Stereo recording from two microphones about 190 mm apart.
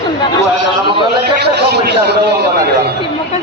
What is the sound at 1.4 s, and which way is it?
Speech, 60° right (ahead or behind).